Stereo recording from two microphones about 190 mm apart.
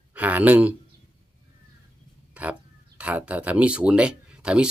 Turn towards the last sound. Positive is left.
turn(degrees=-5)  # may be behind; listen again after turning